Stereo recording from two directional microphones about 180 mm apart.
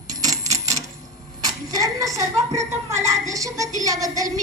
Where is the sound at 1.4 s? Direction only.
20° right (ahead or behind).